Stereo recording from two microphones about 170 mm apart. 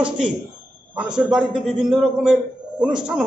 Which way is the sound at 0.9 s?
5° right (ahead or behind).